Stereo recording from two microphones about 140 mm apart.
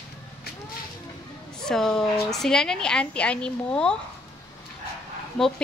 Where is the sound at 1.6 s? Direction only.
5° left (ahead or behind).